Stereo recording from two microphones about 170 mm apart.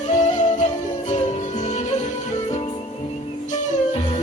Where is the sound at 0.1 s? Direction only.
45° left (ahead or behind).